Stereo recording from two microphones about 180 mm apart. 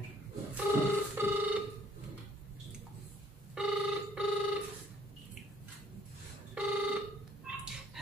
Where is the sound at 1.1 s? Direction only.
10° right (ahead or behind).